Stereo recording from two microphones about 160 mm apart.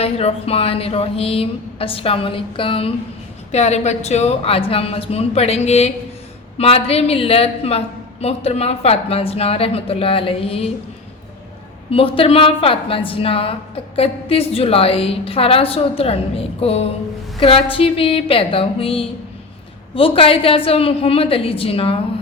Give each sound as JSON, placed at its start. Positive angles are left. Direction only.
{"t": 0.0, "sound": "a woman's voice", "side_deg": 40}
{"t": 11.9, "sound": "a woman's voice", "side_deg": 35}